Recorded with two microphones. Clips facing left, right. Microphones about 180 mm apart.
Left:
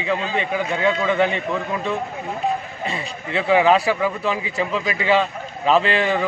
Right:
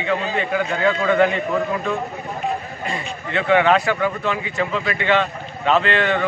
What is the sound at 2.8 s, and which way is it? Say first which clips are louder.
A man's voice: right 1 dB; 5° left (ahead or behind).